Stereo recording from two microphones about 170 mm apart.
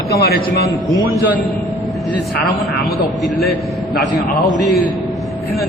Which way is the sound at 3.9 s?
65° left (ahead or behind).